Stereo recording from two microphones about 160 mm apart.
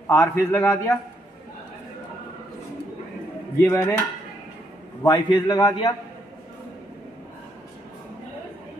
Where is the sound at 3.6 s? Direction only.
15° left (ahead or behind).